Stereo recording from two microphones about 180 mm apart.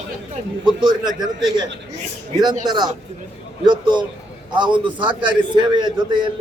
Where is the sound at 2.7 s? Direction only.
25° right (ahead or behind).